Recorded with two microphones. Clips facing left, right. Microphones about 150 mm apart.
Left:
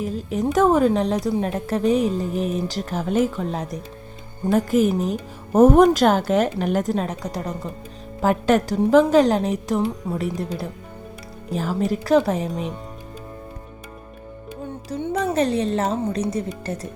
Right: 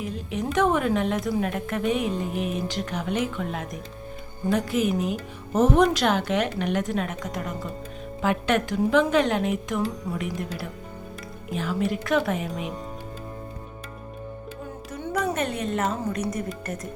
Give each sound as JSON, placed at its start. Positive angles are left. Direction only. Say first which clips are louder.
{"t": 0.0, "sound": "a woman's voice", "louder": "left 6 dB", "side_deg": 40}
{"t": 10.0, "sound": "speech", "louder": "left 4 dB", "side_deg": 25}
{"t": 11.5, "sound": "a woman's voice", "louder": "left 3 dB", "side_deg": 40}
{"t": 14.8, "sound": "a woman's voice", "louder": "left 4 dB", "side_deg": 30}